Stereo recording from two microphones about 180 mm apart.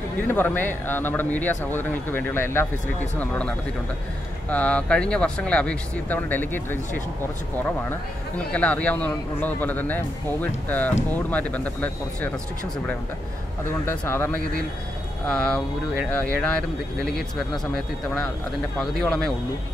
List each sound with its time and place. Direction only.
0.3 s speech: 10° left (ahead or behind)
8.5 s speech: 5° left (ahead or behind)
13.8 s speech: 15° left (ahead or behind)
18.8 s speech: 5° left (ahead or behind)